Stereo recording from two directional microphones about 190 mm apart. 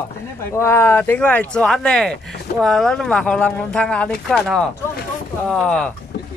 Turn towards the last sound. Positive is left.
turn(degrees=5)  # may be behind; listen again after turning